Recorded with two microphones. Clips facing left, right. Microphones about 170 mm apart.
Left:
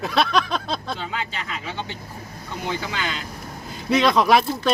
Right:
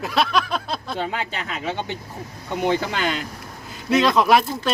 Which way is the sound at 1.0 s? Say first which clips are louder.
Right 3 dB; 55° right (ahead or behind).